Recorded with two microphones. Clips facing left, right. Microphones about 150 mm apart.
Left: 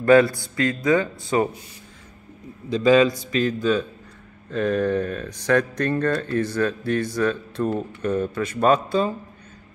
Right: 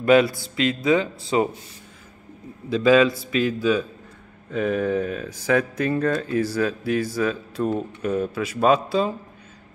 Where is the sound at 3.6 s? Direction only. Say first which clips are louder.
Even; 10° right (ahead or behind).